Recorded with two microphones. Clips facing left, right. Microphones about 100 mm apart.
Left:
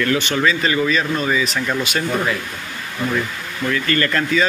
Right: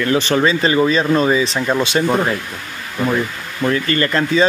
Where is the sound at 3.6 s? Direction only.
30° right (ahead or behind).